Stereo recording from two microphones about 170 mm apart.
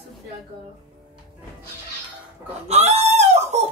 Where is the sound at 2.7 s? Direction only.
40° right (ahead or behind).